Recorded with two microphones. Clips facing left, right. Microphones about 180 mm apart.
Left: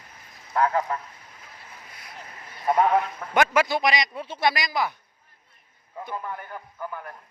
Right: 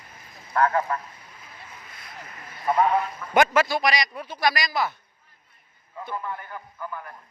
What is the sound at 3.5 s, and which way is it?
A man's voice, 20° left (ahead or behind).